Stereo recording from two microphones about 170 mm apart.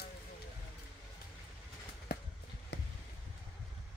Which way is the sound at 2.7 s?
90° left.